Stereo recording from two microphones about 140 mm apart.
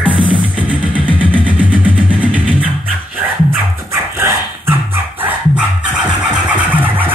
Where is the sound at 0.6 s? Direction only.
10° right (ahead or behind).